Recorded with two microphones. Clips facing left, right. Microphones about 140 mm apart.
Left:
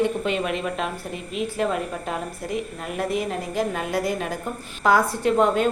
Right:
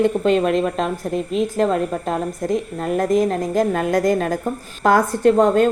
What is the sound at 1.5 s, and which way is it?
A woman's voice, 40° right (ahead or behind).